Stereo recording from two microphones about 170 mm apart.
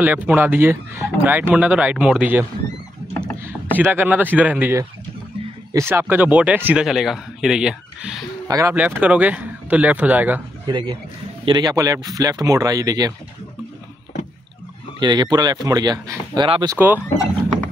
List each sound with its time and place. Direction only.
0.0 s speech: 10° right (ahead or behind)
3.7 s speech: 10° right (ahead or behind)
8.5 s speech: 20° right (ahead or behind)
8.7 s speech: 10° right (ahead or behind)
10.7 s speech: 25° right (ahead or behind)
15.0 s speech: 25° right (ahead or behind)
16.7 s speech: 10° right (ahead or behind)